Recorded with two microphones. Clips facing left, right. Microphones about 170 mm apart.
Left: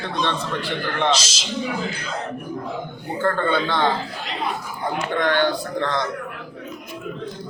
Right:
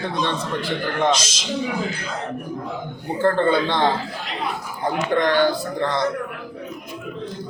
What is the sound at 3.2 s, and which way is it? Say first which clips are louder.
Speech: right 3 dB; 30° right (ahead or behind).